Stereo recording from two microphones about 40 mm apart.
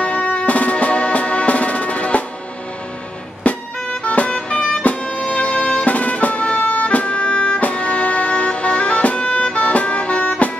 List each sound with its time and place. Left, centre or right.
0.0 s music: left
3.4 s music: left
5.9 s music: left